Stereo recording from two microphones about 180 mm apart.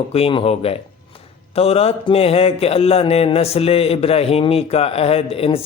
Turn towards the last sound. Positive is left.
turn(degrees=30)  # may be behind; listen again after turning